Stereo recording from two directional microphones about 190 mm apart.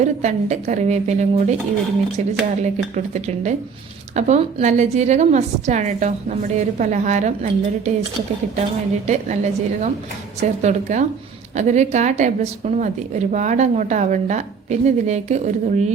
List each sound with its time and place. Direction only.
0.0 s a woman's voice: 35° right (ahead or behind)
9.0 s a woman's voice: 40° right (ahead or behind)